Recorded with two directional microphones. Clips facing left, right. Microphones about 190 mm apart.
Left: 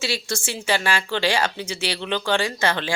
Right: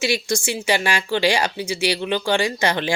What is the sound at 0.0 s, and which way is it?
Speech, 15° right (ahead or behind).